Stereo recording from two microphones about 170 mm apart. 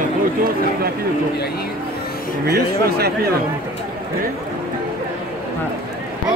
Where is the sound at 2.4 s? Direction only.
70° right (ahead or behind).